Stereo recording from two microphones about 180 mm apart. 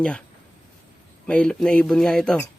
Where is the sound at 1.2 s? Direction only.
5° left (ahead or behind).